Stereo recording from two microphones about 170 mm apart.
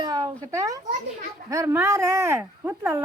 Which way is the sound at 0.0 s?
20° right (ahead or behind).